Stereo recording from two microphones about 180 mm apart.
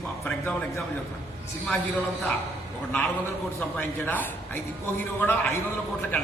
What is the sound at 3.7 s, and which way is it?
A man's voice, 10° left (ahead or behind).